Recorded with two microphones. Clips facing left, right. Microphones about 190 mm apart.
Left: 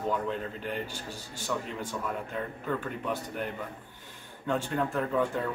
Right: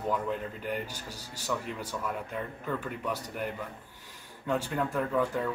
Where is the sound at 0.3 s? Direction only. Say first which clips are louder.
Even; 10° right (ahead or behind).